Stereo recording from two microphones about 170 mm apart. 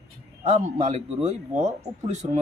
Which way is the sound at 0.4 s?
40° right (ahead or behind).